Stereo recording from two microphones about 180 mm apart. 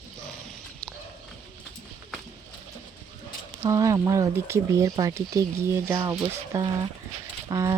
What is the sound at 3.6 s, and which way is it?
Speech, 20° right (ahead or behind).